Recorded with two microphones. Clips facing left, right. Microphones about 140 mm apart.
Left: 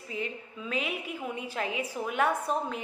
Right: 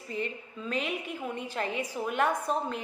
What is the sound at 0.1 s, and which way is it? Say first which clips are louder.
A woman's voice: right 1 dB; 5° left (ahead or behind).